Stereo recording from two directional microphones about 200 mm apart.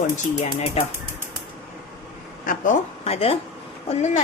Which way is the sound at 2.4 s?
40° left (ahead or behind).